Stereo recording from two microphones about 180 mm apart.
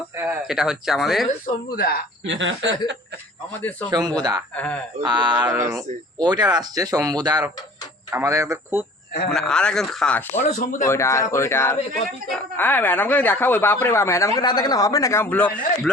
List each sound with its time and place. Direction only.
0.2 s speech: 5° right (ahead or behind)
1.7 s speech: 55° left (ahead or behind)
2.2 s speech: 90° right
3.6 s speech: 10° left (ahead or behind)
3.8 s speech: 20° right (ahead or behind)
4.5 s speech: 10° left (ahead or behind)
5.0 s speech: 25° right (ahead or behind)
5.5 s speech: 10° right (ahead or behind)
5.7 s speech: 25° right (ahead or behind)
9.3 s speech: 5° left (ahead or behind)
10.6 s speech: 50° left (ahead or behind)
10.8 s speech: 15° left (ahead or behind)